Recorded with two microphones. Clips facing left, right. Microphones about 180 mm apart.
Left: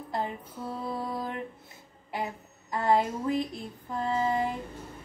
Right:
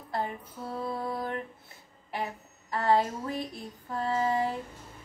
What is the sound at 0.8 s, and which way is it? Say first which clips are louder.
Child singing: right 1 dB; 15° left (ahead or behind).